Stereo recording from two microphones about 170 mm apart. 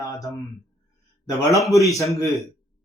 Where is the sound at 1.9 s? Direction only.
20° left (ahead or behind).